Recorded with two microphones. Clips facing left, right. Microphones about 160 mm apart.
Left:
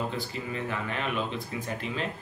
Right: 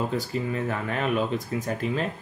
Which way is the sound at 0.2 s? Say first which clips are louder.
Right 6 dB; 45° right (ahead or behind).